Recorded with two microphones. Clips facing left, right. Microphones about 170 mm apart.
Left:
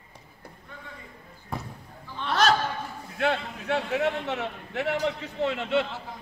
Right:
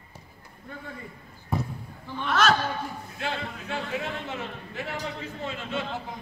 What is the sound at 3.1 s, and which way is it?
A man's voice, 65° left (ahead or behind).